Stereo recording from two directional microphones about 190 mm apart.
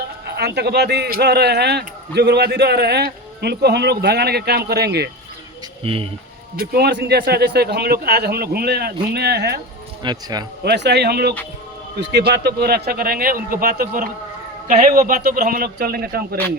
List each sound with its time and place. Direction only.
0.3 s a man's voice: 60° right (ahead or behind)
5.8 s speech: 30° right (ahead or behind)
6.6 s a man's voice: 55° right (ahead or behind)
10.0 s speech: 20° right (ahead or behind)
10.6 s a man's voice: 60° right (ahead or behind)